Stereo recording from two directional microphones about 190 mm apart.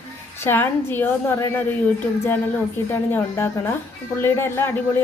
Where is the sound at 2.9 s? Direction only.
15° left (ahead or behind).